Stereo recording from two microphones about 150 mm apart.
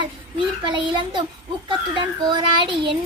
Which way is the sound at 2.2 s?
30° right (ahead or behind).